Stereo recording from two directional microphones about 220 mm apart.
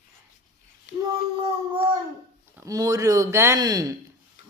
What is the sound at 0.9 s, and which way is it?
Child singing, 50° left (ahead or behind).